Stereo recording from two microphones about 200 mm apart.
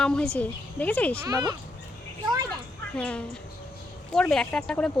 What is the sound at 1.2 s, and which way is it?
Speech, 15° right (ahead or behind).